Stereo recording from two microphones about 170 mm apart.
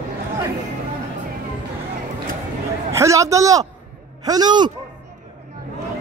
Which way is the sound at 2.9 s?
20° right (ahead or behind).